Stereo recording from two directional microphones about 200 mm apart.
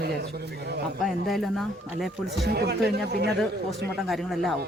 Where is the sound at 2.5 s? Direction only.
55° right (ahead or behind).